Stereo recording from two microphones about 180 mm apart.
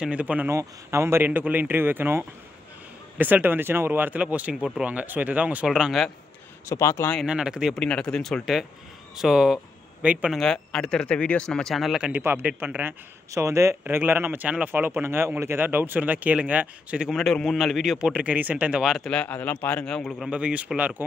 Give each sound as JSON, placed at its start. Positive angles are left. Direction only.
{"t": 0.0, "sound": "speech", "side_deg": -5}
{"t": 6.7, "sound": "speech", "side_deg": 15}
{"t": 7.2, "sound": "speech", "side_deg": -5}